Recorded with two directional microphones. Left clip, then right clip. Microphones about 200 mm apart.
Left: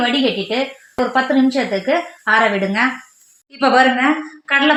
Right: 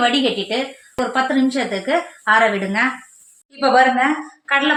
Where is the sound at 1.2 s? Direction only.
40° left (ahead or behind).